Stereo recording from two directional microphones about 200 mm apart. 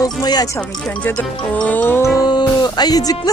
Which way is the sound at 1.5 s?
10° left (ahead or behind).